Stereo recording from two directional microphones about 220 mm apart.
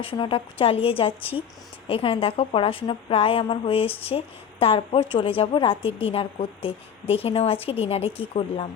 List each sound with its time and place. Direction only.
0.0 s a woman's voice: 25° left (ahead or behind)